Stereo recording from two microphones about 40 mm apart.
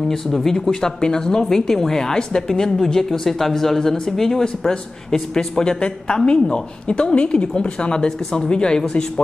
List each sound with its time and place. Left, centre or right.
0.1 s speech: centre